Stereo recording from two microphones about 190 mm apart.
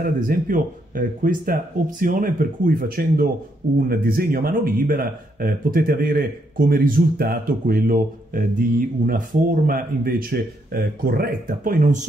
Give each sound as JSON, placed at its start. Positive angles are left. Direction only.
{"t": 0.0, "sound": "speech", "side_deg": -45}